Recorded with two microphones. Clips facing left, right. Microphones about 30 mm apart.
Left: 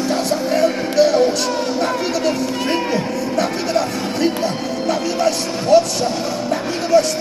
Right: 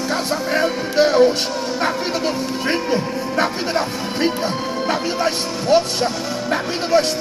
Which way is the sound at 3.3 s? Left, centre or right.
Right.